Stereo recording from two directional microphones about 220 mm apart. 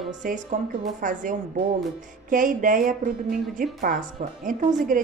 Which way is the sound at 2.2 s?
35° right (ahead or behind).